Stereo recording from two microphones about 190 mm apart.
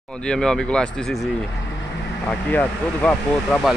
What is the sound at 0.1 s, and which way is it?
Speech, 5° left (ahead or behind).